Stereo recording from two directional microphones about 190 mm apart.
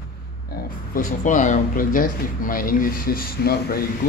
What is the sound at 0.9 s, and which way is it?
Speech, 40° left (ahead or behind).